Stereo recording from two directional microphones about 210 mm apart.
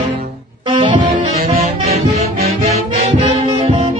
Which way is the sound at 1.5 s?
30° right (ahead or behind).